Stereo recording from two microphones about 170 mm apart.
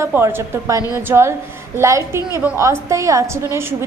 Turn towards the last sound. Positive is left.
turn(degrees=-20)  # may be behind; listen again after turning